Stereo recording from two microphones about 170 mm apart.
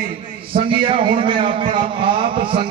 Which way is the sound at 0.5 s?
30° right (ahead or behind).